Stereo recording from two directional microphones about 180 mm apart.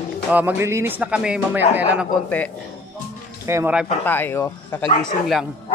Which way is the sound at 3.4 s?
15° right (ahead or behind).